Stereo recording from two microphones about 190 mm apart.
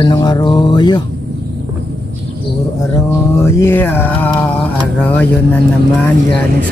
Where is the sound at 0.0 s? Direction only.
20° left (ahead or behind).